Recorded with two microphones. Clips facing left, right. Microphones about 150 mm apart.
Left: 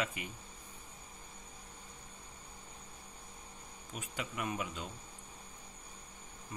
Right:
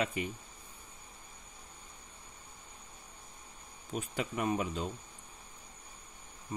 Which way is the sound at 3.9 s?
35° right (ahead or behind).